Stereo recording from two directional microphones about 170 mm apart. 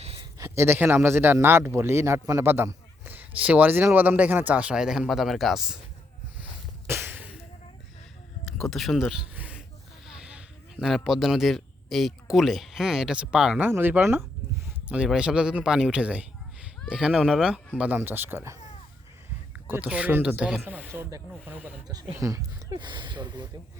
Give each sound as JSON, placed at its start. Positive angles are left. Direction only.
{"t": 0.3, "sound": "speech", "side_deg": -15}
{"t": 6.8, "sound": "a sound", "side_deg": -15}
{"t": 8.4, "sound": "a sound", "side_deg": 0}
{"t": 10.1, "sound": "speech", "side_deg": -5}
{"t": 19.6, "sound": "speech", "side_deg": -10}
{"t": 21.8, "sound": "speech", "side_deg": -25}